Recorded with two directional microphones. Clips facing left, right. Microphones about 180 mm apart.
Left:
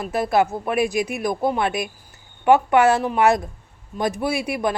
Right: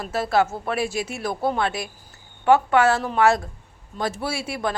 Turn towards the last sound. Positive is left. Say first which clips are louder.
# left 4 dB
turn(degrees=15)  # may be behind; listen again after turning